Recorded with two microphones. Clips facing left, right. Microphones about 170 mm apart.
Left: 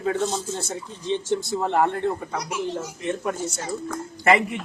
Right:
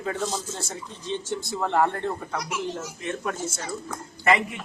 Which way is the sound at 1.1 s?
15° left (ahead or behind).